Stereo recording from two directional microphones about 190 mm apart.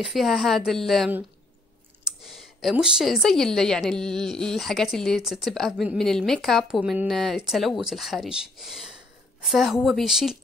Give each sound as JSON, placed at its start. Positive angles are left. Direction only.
{"t": 0.0, "sound": "speech", "side_deg": 0}